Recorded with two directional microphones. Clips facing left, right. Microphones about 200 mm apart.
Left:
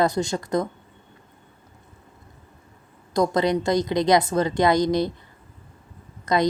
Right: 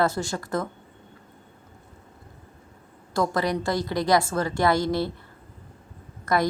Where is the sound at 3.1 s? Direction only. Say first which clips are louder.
Left 4 dB; 20° left (ahead or behind).